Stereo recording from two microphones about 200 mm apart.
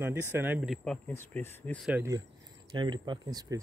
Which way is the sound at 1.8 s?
10° right (ahead or behind).